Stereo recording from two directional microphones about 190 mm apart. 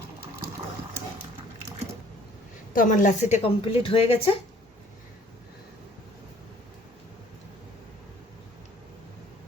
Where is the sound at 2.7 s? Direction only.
45° left (ahead or behind).